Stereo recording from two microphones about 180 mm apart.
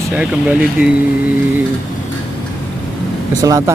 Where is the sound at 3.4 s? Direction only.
20° right (ahead or behind).